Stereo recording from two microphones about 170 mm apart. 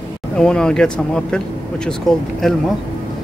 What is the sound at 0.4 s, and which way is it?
Speech, 5° left (ahead or behind).